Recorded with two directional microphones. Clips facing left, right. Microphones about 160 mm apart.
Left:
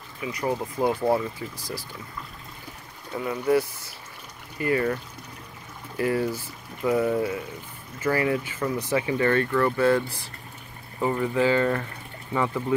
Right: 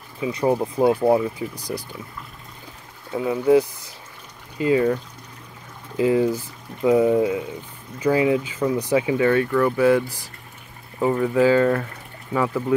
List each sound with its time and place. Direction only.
0.2 s speech: 25° right (ahead or behind)
0.9 s speech: 15° right (ahead or behind)
3.2 s speech: 15° right (ahead or behind)